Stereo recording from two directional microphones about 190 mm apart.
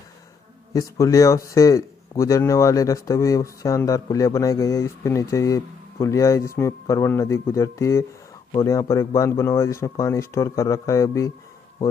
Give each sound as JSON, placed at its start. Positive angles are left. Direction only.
{"t": 0.7, "sound": "speech", "side_deg": 15}